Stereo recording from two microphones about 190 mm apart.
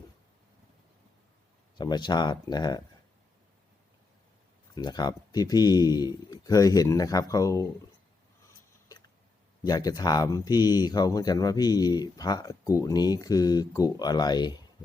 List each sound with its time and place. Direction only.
1.8 s speech: 20° left (ahead or behind)
4.7 s speech: 20° left (ahead or behind)
9.6 s speech: 20° left (ahead or behind)